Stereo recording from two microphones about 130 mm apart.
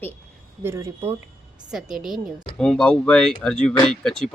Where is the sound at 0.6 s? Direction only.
20° right (ahead or behind).